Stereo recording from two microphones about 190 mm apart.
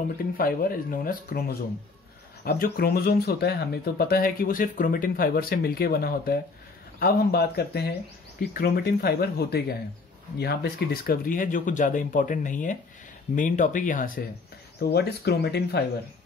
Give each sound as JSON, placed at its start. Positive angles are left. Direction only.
{"t": 0.4, "sound": "speech", "side_deg": 50}
{"t": 14.8, "sound": "speech", "side_deg": 60}